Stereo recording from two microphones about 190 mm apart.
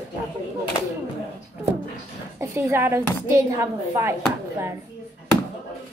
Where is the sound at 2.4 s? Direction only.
15° right (ahead or behind).